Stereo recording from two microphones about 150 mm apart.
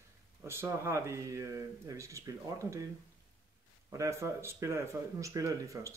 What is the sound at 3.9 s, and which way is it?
Speech, 20° right (ahead or behind).